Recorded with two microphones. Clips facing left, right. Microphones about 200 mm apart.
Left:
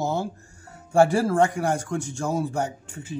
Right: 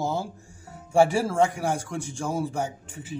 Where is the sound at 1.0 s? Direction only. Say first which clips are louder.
Left 2 dB; centre (ahead or behind).